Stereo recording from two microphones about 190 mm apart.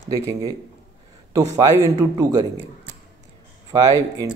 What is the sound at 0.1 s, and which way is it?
Speech, 20° right (ahead or behind).